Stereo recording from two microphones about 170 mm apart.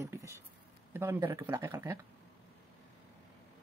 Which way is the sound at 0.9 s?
15° right (ahead or behind).